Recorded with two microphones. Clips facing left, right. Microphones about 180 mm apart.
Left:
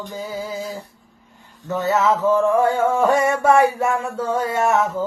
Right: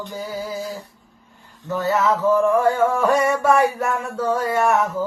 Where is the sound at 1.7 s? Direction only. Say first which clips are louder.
Left 1 dB; 20° left (ahead or behind).